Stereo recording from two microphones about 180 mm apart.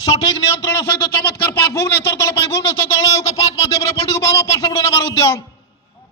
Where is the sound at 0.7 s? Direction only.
10° left (ahead or behind).